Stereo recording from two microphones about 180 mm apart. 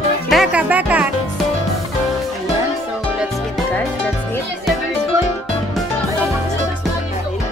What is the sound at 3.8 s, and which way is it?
Music, 10° left (ahead or behind).